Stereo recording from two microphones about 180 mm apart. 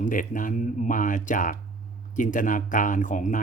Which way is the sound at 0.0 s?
45° left (ahead or behind).